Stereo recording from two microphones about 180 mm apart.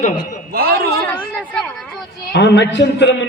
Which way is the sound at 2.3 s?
70° left (ahead or behind).